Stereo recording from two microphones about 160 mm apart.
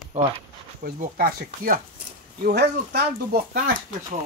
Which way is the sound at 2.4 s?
90° right.